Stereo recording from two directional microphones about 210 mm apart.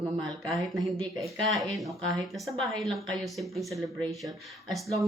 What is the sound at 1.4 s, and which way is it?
A woman's voice, centre (ahead or behind).